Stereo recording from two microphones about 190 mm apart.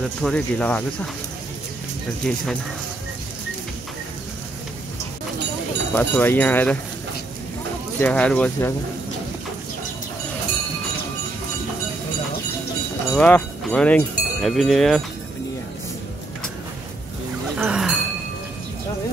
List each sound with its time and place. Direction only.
0.2 s speech: 5° left (ahead or behind)
2.2 s speech: 5° left (ahead or behind)
5.9 s speech: 10° left (ahead or behind)
8.0 s speech: 5° left (ahead or behind)
13.1 s speech: 5° left (ahead or behind)
17.6 s a sound: 5° right (ahead or behind)